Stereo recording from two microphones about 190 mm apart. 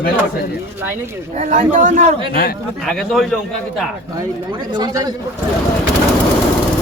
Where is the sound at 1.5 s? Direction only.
40° right (ahead or behind).